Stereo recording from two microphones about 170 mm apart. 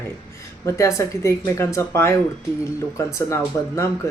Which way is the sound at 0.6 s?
15° left (ahead or behind).